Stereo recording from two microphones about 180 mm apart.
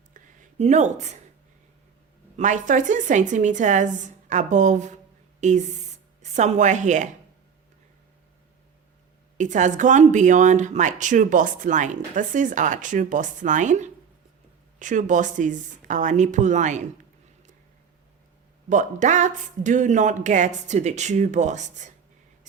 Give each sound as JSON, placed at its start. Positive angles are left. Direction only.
{"t": 0.1, "sound": "a sound", "side_deg": -45}
{"t": 0.6, "sound": "speech", "side_deg": -40}
{"t": 2.3, "sound": "speech", "side_deg": -45}
{"t": 9.4, "sound": "speech", "side_deg": -40}
{"t": 18.7, "sound": "speech", "side_deg": -45}